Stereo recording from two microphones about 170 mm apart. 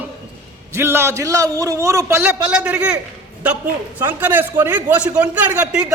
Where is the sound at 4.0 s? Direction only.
10° right (ahead or behind).